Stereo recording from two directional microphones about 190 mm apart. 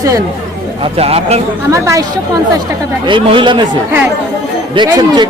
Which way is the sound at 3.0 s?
25° right (ahead or behind).